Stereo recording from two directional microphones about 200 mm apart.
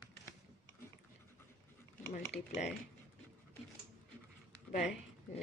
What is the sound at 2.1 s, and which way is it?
Speech, 55° left (ahead or behind).